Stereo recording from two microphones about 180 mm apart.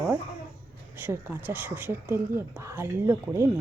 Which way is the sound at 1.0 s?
10° right (ahead or behind).